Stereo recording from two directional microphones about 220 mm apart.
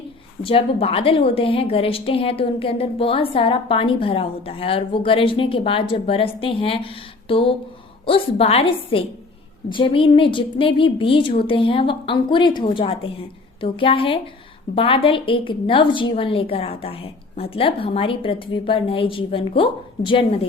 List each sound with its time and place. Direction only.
0.4 s a woman's voice: 25° left (ahead or behind)